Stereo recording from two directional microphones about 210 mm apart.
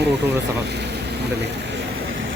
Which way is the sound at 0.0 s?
55° right (ahead or behind).